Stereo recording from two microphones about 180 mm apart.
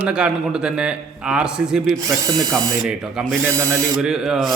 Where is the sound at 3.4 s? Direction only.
15° right (ahead or behind).